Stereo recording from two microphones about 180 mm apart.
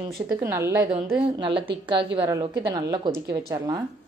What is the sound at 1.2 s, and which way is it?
A woman's voice, 30° right (ahead or behind).